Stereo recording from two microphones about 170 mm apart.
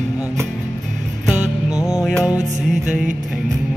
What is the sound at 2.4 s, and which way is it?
Music, 45° right (ahead or behind).